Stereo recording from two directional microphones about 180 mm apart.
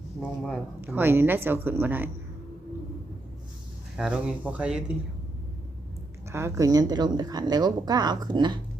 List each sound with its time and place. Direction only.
0.2 s a woman's voice: 5° right (ahead or behind)
3.9 s a woman's voice: 5° right (ahead or behind)
6.3 s a woman's voice: 15° right (ahead or behind)